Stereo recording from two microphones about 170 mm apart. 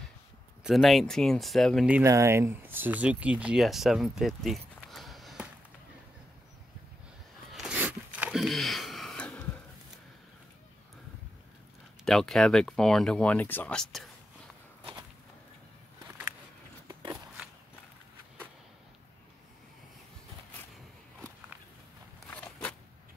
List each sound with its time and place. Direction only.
0.7 s speech: centre (ahead or behind)
2.0 s speech: 15° right (ahead or behind); by 5.5 s centre (ahead or behind)
7.5 s a sound: 5° right (ahead or behind)
12.0 s speech: centre (ahead or behind)
16.8 s biting: 25° right (ahead or behind)
22.3 s walk: 5° left (ahead or behind)